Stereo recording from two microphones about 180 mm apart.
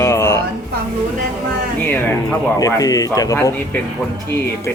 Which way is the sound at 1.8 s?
10° left (ahead or behind).